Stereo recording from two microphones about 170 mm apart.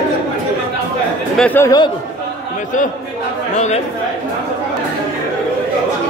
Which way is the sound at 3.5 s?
45° left (ahead or behind).